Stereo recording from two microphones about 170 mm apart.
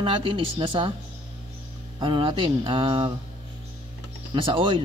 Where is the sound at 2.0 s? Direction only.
30° right (ahead or behind).